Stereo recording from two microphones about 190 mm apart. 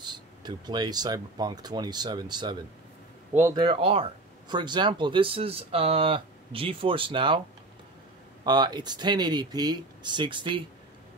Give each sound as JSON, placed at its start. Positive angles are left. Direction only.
{"t": 0.0, "sound": "speech", "side_deg": -20}
{"t": 3.6, "sound": "speech", "side_deg": -30}
{"t": 8.5, "sound": "speech", "side_deg": -20}